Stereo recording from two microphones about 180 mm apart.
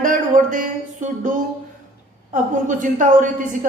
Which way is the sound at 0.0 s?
45° right (ahead or behind).